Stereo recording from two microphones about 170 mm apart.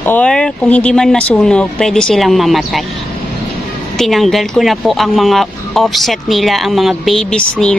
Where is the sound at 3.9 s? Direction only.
Centre (ahead or behind).